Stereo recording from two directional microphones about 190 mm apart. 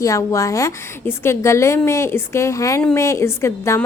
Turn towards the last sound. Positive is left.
turn(degrees=15)  # may be behind; listen again after turning